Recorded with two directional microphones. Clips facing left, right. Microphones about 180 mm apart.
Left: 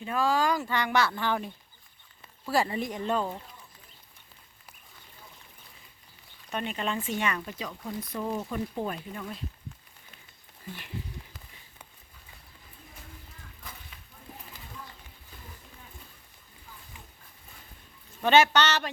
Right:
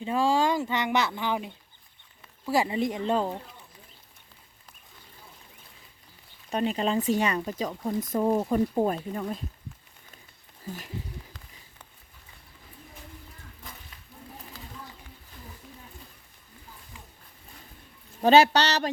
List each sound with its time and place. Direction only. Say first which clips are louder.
0.0 s speech: right 2 dB; 25° right (ahead or behind)
2.5 s speech: right 3 dB; 15° right (ahead or behind)
6.5 s speech: right 6 dB; 35° right (ahead or behind)
18.2 s speech: right 3 dB; 35° right (ahead or behind)